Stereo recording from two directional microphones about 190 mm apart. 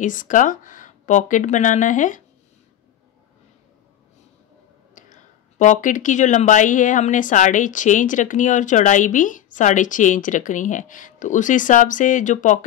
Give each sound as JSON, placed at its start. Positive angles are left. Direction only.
{"t": 0.0, "sound": "speech", "side_deg": 45}
{"t": 4.9, "sound": "speech", "side_deg": 40}